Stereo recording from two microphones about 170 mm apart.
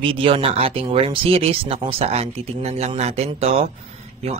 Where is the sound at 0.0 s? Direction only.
30° right (ahead or behind).